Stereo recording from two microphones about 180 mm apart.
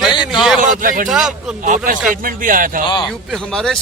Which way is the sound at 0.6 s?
45° right (ahead or behind).